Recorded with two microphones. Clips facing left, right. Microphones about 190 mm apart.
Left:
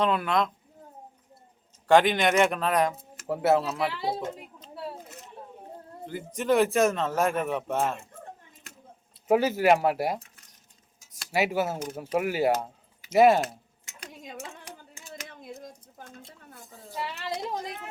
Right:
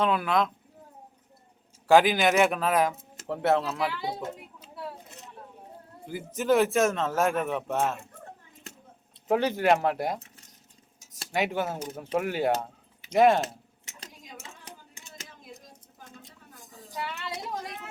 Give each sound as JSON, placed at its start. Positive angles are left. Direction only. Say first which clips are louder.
{"t": 0.0, "sound": "a man's voice", "louder": "even", "side_deg": 0}
{"t": 1.9, "sound": "a man's voice", "louder": "even", "side_deg": -5}
{"t": 3.9, "sound": "speech", "louder": "left 3 dB", "side_deg": 30}
{"t": 4.6, "sound": "a sound", "louder": "left 4 dB", "side_deg": -10}
{"t": 6.1, "sound": "a man's voice", "louder": "right 1 dB", "side_deg": -5}
{"t": 9.2, "sound": "speech", "louder": "left 2 dB", "side_deg": 5}
{"t": 11.3, "sound": "speech", "louder": "left 2 dB", "side_deg": 5}